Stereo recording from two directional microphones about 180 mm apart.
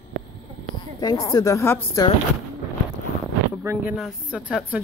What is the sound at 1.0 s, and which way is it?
A woman's voice, 20° left (ahead or behind).